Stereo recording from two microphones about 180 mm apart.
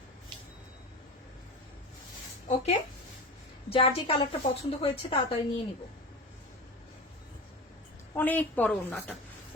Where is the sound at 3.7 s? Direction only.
30° left (ahead or behind).